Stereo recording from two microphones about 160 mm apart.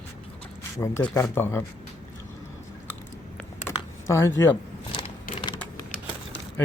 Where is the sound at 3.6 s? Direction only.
15° left (ahead or behind).